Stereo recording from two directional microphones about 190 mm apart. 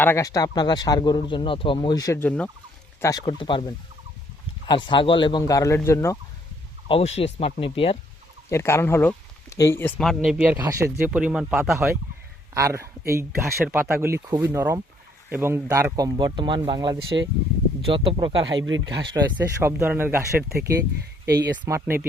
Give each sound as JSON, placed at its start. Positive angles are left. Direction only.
{"t": 0.0, "sound": "speech", "side_deg": 15}
{"t": 6.8, "sound": "speech", "side_deg": 30}
{"t": 8.4, "sound": "speech", "side_deg": 15}
{"t": 10.2, "sound": "speech", "side_deg": -5}
{"t": 12.5, "sound": "speech", "side_deg": -15}
{"t": 18.5, "sound": "speech", "side_deg": -90}
{"t": 18.9, "sound": "speech", "side_deg": -20}
{"t": 21.8, "sound": "speech", "side_deg": -10}